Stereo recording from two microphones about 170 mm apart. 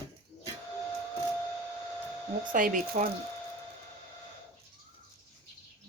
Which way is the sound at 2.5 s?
50° right (ahead or behind).